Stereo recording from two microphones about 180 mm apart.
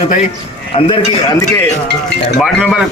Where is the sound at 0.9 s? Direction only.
20° left (ahead or behind).